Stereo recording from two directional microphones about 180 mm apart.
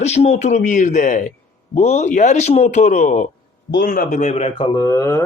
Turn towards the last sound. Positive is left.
turn(degrees=20)  # may be behind; listen again after turning